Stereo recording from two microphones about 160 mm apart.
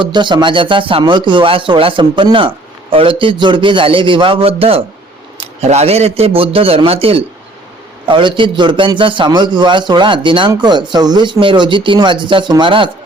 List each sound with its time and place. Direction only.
0.0 s a man's voice: 30° right (ahead or behind)